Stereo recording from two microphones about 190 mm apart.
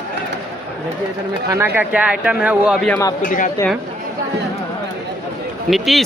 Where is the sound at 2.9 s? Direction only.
15° left (ahead or behind).